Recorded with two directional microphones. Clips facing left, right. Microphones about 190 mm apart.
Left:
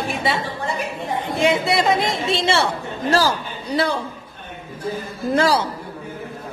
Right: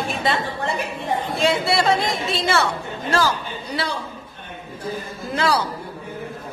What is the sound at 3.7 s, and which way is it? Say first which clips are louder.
Music: left 7 dB; 35° left (ahead or behind).